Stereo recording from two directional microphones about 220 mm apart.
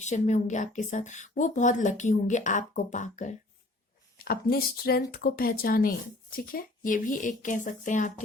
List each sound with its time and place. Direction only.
0.0 s a woman's voice: 30° left (ahead or behind)